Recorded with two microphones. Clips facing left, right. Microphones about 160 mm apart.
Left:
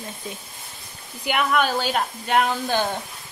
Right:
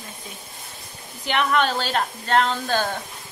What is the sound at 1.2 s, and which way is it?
A woman's voice, 10° left (ahead or behind).